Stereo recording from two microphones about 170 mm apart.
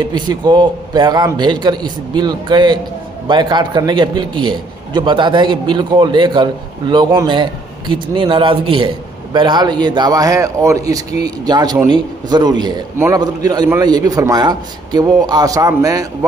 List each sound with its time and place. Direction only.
0.0 s a man's voice: 25° right (ahead or behind)